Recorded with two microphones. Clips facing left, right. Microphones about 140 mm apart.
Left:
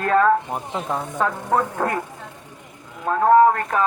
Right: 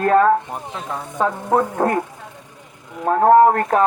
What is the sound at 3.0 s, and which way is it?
Speech, 35° right (ahead or behind).